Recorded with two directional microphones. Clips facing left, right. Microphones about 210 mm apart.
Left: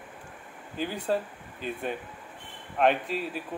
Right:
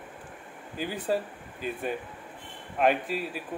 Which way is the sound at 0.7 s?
5° right (ahead or behind).